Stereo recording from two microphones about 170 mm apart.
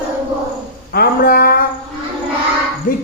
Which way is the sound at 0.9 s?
60° left (ahead or behind).